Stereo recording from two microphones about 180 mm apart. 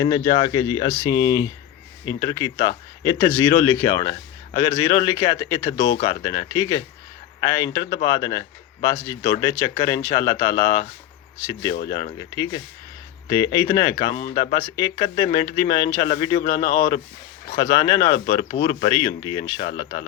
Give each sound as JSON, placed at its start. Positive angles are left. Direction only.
{"t": 0.0, "sound": "speech", "side_deg": 25}
{"t": 12.2, "sound": "speech", "side_deg": 20}